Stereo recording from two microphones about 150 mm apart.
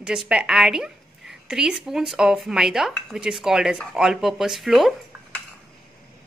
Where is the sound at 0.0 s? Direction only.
5° right (ahead or behind).